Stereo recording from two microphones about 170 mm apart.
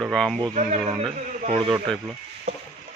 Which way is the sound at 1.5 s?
30° right (ahead or behind).